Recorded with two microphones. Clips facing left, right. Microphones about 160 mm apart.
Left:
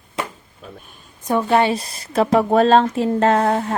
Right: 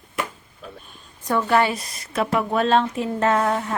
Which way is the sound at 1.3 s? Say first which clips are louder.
Left 3 dB; 20° left (ahead or behind).